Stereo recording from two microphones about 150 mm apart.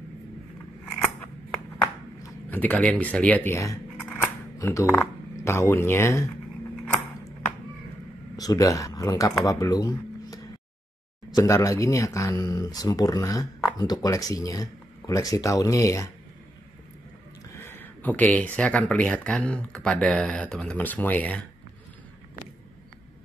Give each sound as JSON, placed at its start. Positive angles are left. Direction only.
{"t": 1.8, "sound": "speech", "side_deg": 15}
{"t": 4.1, "sound": "a sound", "side_deg": 20}
{"t": 8.4, "sound": "speech", "side_deg": 25}
{"t": 17.5, "sound": "speech", "side_deg": 15}